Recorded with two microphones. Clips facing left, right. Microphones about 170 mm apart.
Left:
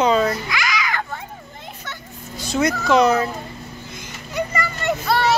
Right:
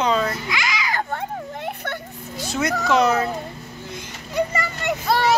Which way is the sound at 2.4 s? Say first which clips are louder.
Left 3 dB; 5° right (ahead or behind).